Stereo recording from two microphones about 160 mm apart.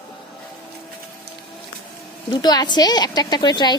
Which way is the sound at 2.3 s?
25° left (ahead or behind).